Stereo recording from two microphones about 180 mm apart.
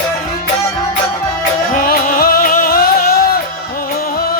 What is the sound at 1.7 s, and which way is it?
Music, 50° left (ahead or behind).